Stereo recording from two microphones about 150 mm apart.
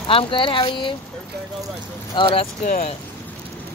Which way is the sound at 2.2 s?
40° left (ahead or behind).